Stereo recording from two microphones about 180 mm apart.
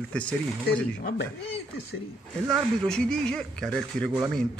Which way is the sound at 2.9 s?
5° left (ahead or behind).